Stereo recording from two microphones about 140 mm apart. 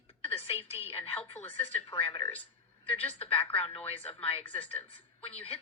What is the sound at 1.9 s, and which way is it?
Speech, 35° left (ahead or behind).